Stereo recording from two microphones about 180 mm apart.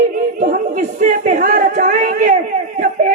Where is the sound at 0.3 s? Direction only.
45° right (ahead or behind).